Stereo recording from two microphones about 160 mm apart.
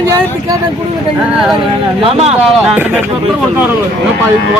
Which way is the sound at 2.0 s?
40° right (ahead or behind).